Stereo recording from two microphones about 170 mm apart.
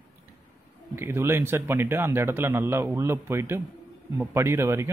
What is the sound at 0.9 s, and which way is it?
Speech, 15° right (ahead or behind).